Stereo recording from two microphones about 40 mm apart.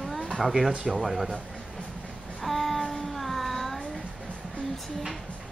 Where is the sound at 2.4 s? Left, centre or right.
Centre.